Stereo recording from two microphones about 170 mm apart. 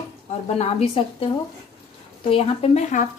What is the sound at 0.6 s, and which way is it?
A woman's voice, 35° left (ahead or behind).